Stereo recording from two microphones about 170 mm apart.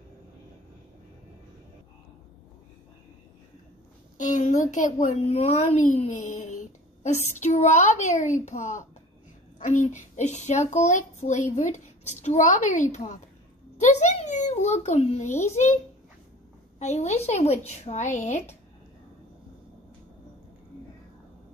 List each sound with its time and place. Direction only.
4.2 s a woman's voice: 45° left (ahead or behind)
16.8 s speech: 40° left (ahead or behind)